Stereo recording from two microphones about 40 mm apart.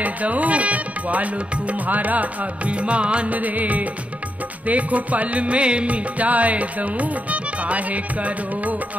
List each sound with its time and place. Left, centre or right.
0.0 s music: right
3.3 s music: right